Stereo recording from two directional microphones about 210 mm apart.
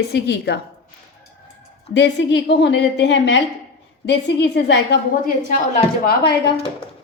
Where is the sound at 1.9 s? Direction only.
55° left (ahead or behind).